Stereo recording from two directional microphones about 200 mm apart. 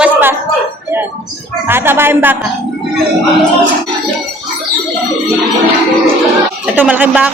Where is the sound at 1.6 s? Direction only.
10° right (ahead or behind).